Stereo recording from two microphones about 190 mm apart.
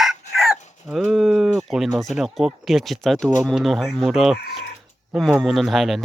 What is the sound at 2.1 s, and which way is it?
Speech, centre (ahead or behind).